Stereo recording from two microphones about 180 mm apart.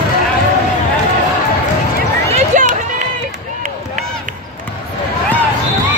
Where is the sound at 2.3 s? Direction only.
40° right (ahead or behind).